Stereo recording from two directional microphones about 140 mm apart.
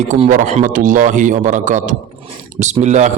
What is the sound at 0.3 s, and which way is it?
A man's voice, 60° right (ahead or behind).